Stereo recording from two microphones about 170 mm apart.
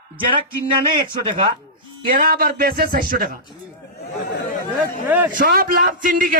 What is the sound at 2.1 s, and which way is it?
A man's voice, 60° right (ahead or behind).